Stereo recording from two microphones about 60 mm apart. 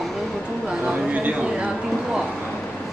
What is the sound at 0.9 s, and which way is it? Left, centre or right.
Speech, right.